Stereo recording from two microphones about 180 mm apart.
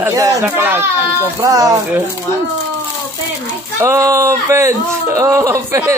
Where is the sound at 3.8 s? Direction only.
15° right (ahead or behind).